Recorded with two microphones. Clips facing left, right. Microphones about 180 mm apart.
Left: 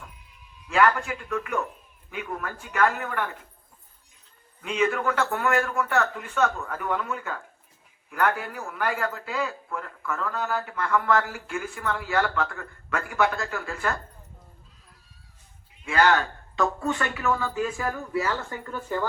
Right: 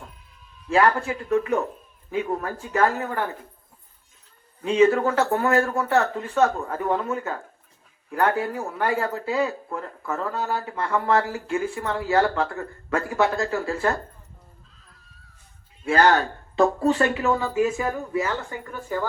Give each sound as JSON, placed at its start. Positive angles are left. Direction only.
{"t": 0.7, "sound": "speech", "side_deg": -30}
{"t": 4.6, "sound": "speech", "side_deg": -30}
{"t": 15.8, "sound": "speech", "side_deg": -40}